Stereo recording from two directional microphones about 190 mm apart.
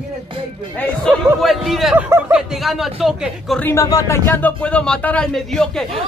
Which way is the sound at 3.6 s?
15° left (ahead or behind).